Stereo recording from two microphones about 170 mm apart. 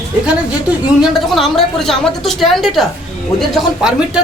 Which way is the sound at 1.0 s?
Centre (ahead or behind).